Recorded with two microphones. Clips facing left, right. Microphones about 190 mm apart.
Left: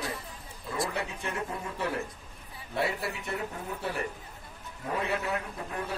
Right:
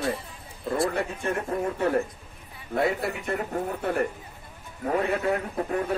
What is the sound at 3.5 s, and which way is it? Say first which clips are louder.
Speech: right 8 dB; 60° right (ahead or behind).